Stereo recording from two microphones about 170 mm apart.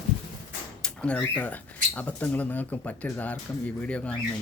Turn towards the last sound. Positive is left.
turn(degrees=5)  # may be behind; listen again after turning